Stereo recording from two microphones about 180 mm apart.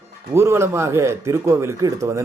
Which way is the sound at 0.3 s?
15° right (ahead or behind).